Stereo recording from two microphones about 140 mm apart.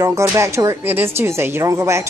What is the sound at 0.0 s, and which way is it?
Speech, 20° right (ahead or behind).